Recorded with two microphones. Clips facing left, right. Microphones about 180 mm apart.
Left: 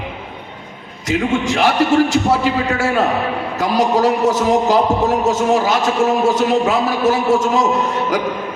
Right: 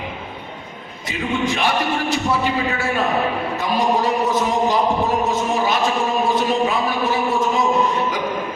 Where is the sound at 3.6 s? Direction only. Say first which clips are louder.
Left 5 dB; 85° left.